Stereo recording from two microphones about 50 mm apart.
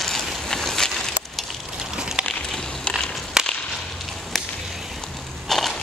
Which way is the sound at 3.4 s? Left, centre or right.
Centre.